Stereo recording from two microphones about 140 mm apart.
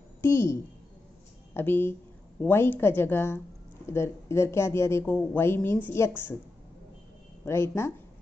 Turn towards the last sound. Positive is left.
turn(degrees=20)  # may be behind; listen again after turning